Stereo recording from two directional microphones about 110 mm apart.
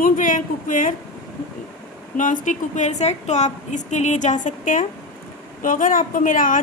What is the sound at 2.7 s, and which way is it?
A woman's voice, 90° left.